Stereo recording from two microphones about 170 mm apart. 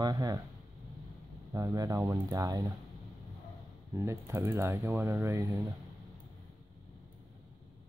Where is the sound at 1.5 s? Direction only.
20° right (ahead or behind).